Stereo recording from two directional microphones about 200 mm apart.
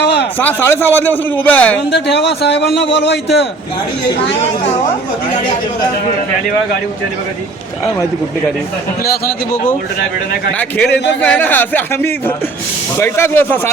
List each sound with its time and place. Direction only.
0.0 s a sound: 60° left (ahead or behind)
0.3 s a man's voice: 10° left (ahead or behind)
1.9 s speech: 60° left (ahead or behind)
10.6 s a man's voice: 5° left (ahead or behind)